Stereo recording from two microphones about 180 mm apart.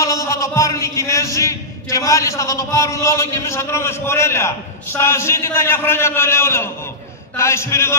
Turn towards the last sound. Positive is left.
turn(degrees=15)  # may be behind; listen again after turning